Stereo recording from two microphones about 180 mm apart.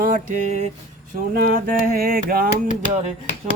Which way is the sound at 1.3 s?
55° right (ahead or behind).